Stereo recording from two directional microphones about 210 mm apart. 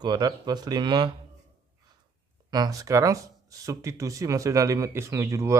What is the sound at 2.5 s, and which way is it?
Speech, 15° right (ahead or behind).